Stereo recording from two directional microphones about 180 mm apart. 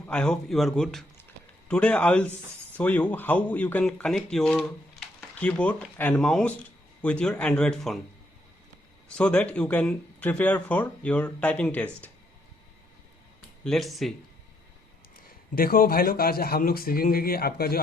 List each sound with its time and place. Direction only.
0.1 s speech: 5° left (ahead or behind)
9.0 s speech: 5° left (ahead or behind)
13.7 s speech: centre (ahead or behind)
15.5 s a man's voice: 55° left (ahead or behind)